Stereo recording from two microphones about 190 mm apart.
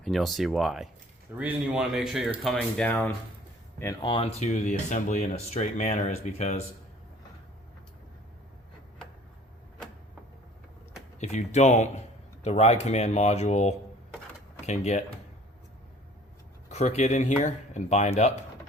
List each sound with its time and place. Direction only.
0.0 s speech: centre (ahead or behind)
4.0 s speech: 30° left (ahead or behind)
11.2 s speech: 35° left (ahead or behind)
16.6 s speech: 35° left (ahead or behind)